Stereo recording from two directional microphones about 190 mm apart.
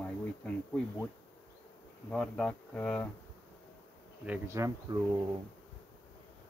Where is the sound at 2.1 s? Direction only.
5° left (ahead or behind).